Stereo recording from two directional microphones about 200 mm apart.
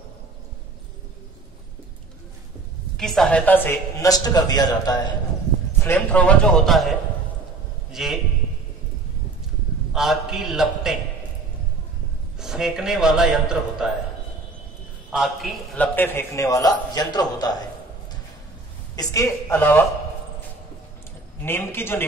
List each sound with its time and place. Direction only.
3.0 s a man's voice: centre (ahead or behind); by 5.0 s 20° left (ahead or behind)
5.8 s a man's voice: 10° left (ahead or behind)
9.9 s a man's voice: centre (ahead or behind)
12.4 s a man's voice: 5° right (ahead or behind)
15.0 s a man's voice: centre (ahead or behind); by 17.6 s 20° left (ahead or behind)
18.9 s a man's voice: 15° left (ahead or behind)
21.4 s a man's voice: 10° left (ahead or behind)